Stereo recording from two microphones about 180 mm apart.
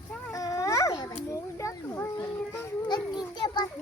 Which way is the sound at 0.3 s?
20° left (ahead or behind).